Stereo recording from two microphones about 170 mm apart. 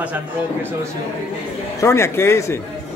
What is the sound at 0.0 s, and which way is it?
Speech, 10° right (ahead or behind).